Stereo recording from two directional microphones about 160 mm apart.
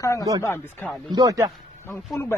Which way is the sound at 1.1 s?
25° right (ahead or behind).